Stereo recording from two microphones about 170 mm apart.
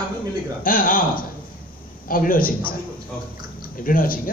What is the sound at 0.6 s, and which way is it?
Speech, 55° left (ahead or behind).